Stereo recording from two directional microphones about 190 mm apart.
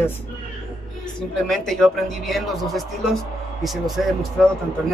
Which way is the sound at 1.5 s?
Centre (ahead or behind).